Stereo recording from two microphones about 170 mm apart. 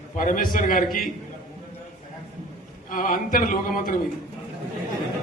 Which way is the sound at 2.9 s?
55° left (ahead or behind).